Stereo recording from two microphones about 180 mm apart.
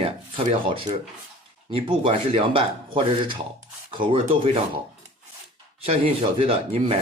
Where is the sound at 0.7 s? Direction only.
30° right (ahead or behind).